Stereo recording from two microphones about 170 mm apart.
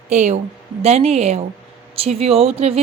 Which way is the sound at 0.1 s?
40° right (ahead or behind).